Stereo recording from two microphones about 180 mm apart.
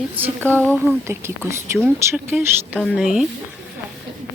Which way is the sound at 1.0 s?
15° right (ahead or behind).